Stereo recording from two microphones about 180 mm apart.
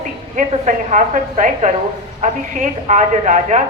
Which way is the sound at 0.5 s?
40° right (ahead or behind).